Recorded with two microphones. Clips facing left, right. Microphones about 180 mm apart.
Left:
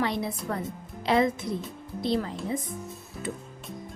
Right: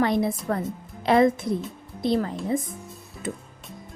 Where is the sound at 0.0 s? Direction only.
50° right (ahead or behind).